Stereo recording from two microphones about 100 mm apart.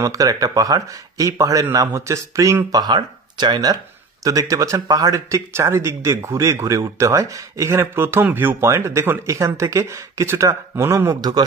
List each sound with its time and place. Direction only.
0.0 s a man's voice: 35° right (ahead or behind)
4.2 s a man's voice: 35° right (ahead or behind)
11.1 s a man's voice: 40° right (ahead or behind)